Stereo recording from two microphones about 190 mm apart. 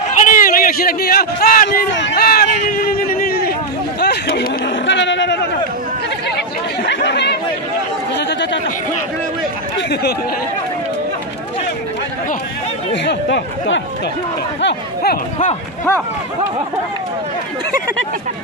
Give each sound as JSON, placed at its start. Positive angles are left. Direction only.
{"t": 0.1, "sound": "speech", "side_deg": 40}
{"t": 2.0, "sound": "chatter", "side_deg": 65}
{"t": 4.0, "sound": "a sound", "side_deg": 55}
{"t": 6.8, "sound": "chatter", "side_deg": 65}
{"t": 9.8, "sound": "speech", "side_deg": 60}
{"t": 12.9, "sound": "speech", "side_deg": 65}